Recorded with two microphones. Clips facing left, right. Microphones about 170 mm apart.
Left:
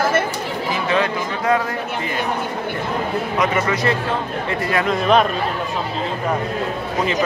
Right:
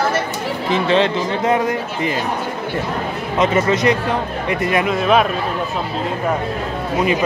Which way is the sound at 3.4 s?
25° right (ahead or behind).